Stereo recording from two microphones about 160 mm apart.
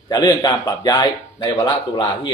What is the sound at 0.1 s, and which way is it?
A man's voice, 25° left (ahead or behind).